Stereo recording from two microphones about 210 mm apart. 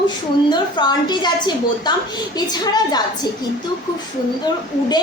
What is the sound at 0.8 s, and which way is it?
Speech, 20° left (ahead or behind).